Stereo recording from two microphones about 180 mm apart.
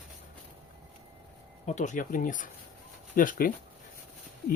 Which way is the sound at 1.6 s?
40° left (ahead or behind).